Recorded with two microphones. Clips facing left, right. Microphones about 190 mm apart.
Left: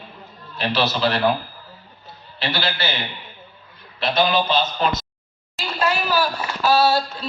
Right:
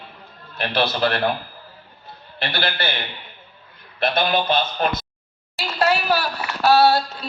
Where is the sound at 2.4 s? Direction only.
55° right (ahead or behind).